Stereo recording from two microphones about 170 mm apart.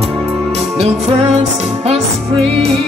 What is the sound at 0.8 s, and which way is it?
Music, 40° right (ahead or behind).